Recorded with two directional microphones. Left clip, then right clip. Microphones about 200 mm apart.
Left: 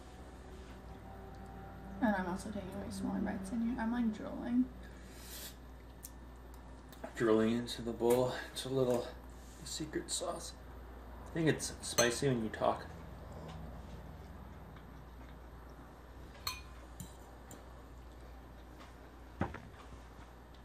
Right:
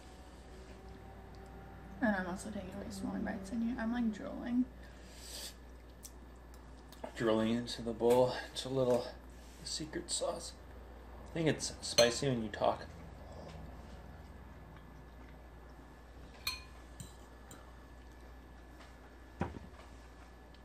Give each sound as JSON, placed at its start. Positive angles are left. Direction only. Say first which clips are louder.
{"t": 2.0, "sound": "a woman's voice", "louder": "even", "side_deg": 0}
{"t": 7.2, "sound": "speech", "louder": "left 2 dB", "side_deg": -20}